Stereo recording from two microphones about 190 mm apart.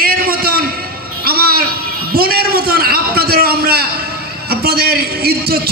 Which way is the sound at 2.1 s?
55° right (ahead or behind).